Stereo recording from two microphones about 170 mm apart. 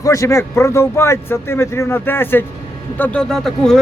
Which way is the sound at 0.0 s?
20° left (ahead or behind).